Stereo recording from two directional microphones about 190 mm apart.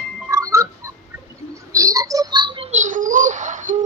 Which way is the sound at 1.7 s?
15° right (ahead or behind).